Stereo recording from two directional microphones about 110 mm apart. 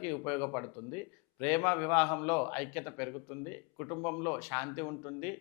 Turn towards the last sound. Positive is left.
turn(degrees=20)  # may be behind; listen again after turning